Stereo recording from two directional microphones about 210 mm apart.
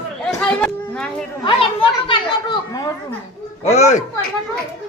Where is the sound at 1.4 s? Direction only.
25° left (ahead or behind).